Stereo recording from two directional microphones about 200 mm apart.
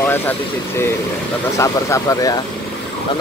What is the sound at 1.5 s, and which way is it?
Speech, 15° left (ahead or behind).